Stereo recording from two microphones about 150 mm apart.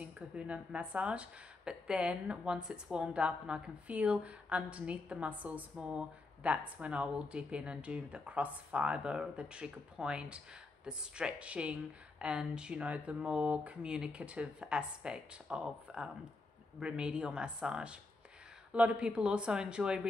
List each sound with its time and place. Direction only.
0.0 s speech: 10° right (ahead or behind)